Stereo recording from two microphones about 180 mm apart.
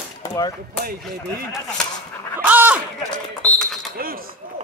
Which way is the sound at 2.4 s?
10° right (ahead or behind).